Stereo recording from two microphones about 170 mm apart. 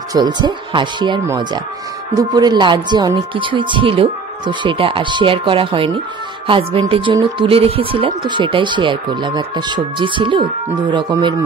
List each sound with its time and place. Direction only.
0.1 s speech: 25° right (ahead or behind)